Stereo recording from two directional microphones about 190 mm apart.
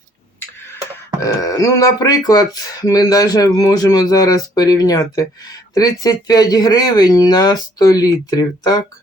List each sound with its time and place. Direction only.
1.2 s speech: 20° left (ahead or behind)